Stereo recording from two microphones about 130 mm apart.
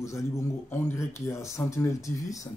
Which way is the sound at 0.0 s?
20° left (ahead or behind).